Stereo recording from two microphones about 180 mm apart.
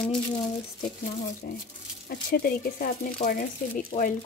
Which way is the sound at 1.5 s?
55° left (ahead or behind).